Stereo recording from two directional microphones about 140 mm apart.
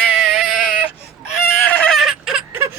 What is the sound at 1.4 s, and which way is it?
Fowl, 15° left (ahead or behind).